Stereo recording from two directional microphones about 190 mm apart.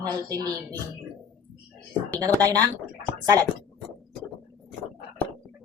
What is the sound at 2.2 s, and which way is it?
Speech, 20° right (ahead or behind).